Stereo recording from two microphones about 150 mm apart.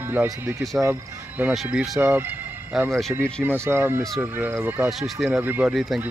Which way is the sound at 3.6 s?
15° right (ahead or behind).